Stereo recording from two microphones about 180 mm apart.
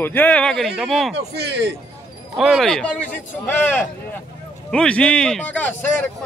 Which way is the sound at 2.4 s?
Centre (ahead or behind).